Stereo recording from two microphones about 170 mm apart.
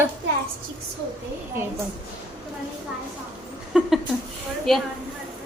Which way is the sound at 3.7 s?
5° right (ahead or behind).